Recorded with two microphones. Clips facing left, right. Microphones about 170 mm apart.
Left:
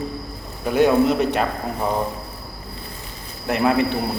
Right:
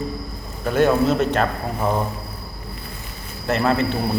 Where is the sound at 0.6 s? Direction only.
15° left (ahead or behind).